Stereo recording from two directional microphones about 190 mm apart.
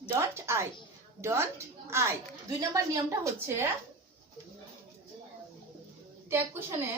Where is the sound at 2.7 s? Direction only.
15° right (ahead or behind).